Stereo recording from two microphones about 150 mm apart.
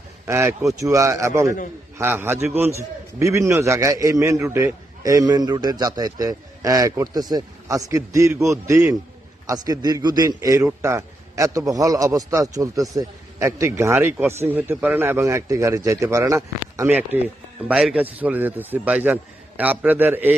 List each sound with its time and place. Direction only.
0.3 s a man's voice: 20° right (ahead or behind)